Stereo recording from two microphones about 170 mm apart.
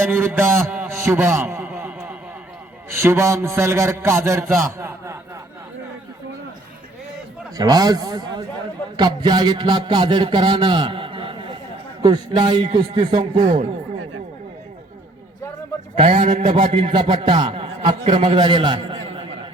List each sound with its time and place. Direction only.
0.0 s a sound: 15° right (ahead or behind)
2.9 s a man's voice: 15° right (ahead or behind)
7.5 s a man's voice: 25° right (ahead or behind)
16.0 s a man's voice: 40° right (ahead or behind)
16.6 s a man's voice: 30° right (ahead or behind)